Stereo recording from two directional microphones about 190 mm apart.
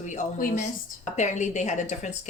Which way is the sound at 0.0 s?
40° left (ahead or behind).